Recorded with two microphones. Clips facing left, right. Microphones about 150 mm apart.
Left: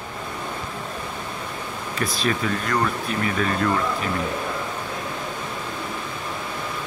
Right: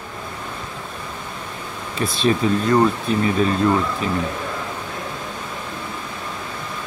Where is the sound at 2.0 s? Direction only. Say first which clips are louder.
Right 6 dB; 25° right (ahead or behind).